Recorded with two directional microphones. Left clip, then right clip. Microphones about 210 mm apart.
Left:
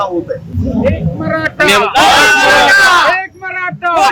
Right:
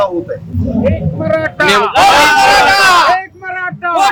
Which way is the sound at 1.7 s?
5° left (ahead or behind).